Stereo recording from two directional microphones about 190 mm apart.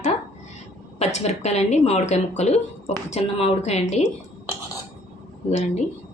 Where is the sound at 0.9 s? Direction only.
35° left (ahead or behind).